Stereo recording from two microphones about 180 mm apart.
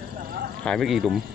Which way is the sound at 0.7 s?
Centre (ahead or behind).